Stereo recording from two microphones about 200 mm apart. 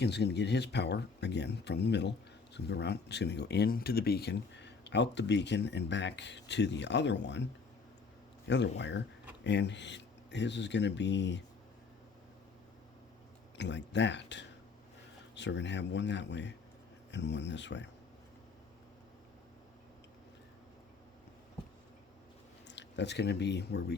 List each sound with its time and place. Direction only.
0.0 s speech: 55° left (ahead or behind)
8.4 s speech: 60° left (ahead or behind)
13.6 s speech: 60° left (ahead or behind)
22.6 s speech: 60° left (ahead or behind)